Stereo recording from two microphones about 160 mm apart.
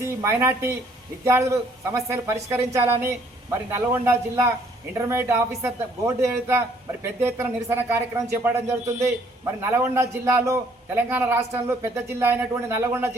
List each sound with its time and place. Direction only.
0.0 s a man's voice: 15° right (ahead or behind)